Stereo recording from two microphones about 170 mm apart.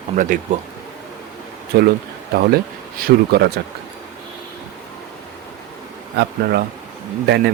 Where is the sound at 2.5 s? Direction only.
60° right (ahead or behind).